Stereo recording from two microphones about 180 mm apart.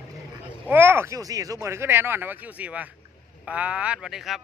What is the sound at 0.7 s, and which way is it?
Speech, 10° right (ahead or behind).